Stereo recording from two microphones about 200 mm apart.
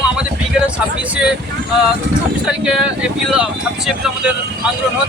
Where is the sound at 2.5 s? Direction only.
5° right (ahead or behind).